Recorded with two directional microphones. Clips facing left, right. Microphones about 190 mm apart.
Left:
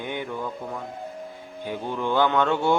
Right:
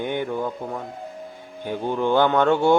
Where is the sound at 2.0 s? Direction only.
45° right (ahead or behind).